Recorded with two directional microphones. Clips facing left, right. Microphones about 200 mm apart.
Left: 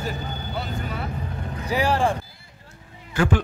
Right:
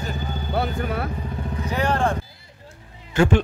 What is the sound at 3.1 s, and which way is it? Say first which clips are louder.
Speech: right 4 dB; 25° right (ahead or behind).